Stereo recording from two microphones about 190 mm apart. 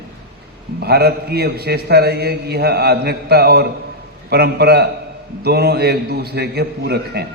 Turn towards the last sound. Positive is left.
turn(degrees=-60)  # may be behind; listen again after turning